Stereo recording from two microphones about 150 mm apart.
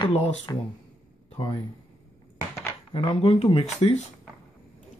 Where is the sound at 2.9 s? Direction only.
35° left (ahead or behind).